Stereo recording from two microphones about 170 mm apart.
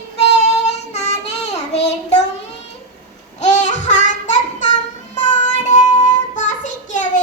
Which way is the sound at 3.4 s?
45° left (ahead or behind).